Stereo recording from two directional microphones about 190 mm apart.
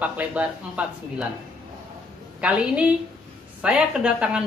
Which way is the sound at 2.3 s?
5° right (ahead or behind).